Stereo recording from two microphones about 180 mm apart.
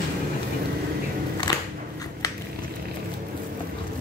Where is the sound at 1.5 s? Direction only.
20° left (ahead or behind).